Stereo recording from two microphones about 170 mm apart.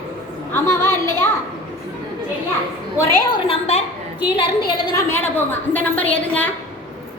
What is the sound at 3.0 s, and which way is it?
Speech, 25° left (ahead or behind).